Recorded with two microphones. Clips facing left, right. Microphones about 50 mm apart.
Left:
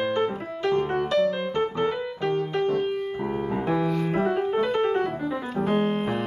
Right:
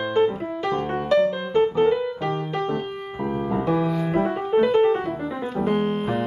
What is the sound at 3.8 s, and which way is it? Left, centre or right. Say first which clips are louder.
Music: right 2 dB; centre.